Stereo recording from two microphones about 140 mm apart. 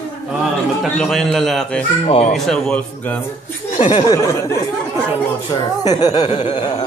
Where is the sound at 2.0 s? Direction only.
45° left (ahead or behind).